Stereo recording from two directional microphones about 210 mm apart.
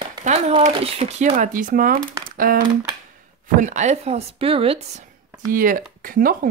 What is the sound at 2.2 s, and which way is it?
Typing, 45° right (ahead or behind).